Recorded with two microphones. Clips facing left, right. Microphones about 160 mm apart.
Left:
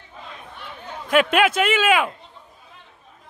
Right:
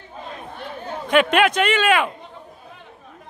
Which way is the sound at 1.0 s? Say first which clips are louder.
Right 1 dB; 5° left (ahead or behind).